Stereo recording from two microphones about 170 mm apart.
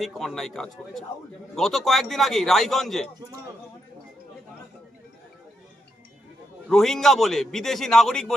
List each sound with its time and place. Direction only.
0.0 s a man's voice: centre (ahead or behind)
6.7 s a man's voice: centre (ahead or behind)